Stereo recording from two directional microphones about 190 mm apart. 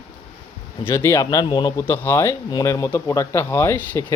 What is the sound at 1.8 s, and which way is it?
Speech, 10° left (ahead or behind).